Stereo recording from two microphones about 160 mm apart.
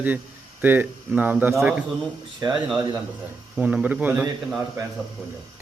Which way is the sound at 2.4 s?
25° right (ahead or behind).